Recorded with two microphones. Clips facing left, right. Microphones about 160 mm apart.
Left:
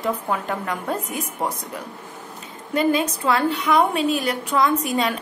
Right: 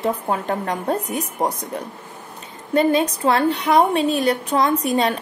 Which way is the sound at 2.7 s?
30° right (ahead or behind).